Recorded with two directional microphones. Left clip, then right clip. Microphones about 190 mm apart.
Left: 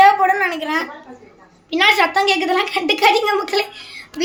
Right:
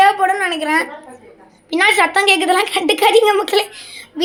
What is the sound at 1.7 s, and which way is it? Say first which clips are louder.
A woman's voice: right 1 dB; 20° right (ahead or behind).